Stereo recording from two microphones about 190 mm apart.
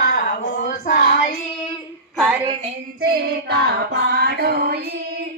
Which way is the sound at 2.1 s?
Centre (ahead or behind).